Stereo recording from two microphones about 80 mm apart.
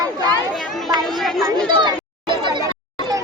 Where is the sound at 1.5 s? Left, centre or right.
Right.